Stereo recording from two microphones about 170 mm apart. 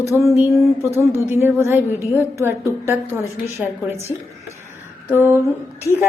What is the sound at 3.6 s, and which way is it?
Speech, 5° right (ahead or behind).